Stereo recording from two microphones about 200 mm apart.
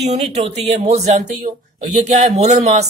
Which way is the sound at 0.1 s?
35° right (ahead or behind).